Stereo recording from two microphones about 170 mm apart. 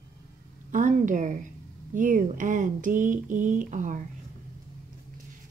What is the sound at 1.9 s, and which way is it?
Speech, 50° right (ahead or behind).